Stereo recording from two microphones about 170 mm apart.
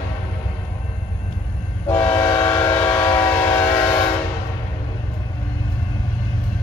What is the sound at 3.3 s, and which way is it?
Train, 15° left (ahead or behind).